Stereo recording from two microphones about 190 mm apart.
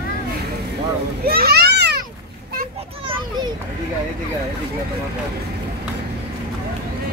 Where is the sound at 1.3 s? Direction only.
55° right (ahead or behind).